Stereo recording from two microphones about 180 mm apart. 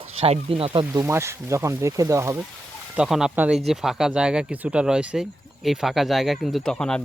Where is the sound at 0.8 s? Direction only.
15° right (ahead or behind).